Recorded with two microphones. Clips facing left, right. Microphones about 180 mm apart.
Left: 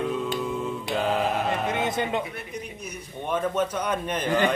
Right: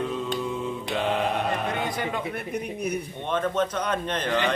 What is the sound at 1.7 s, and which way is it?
Music, 20° left (ahead or behind).